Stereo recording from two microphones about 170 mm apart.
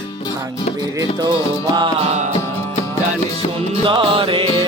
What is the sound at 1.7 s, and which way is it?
Music, 25° right (ahead or behind).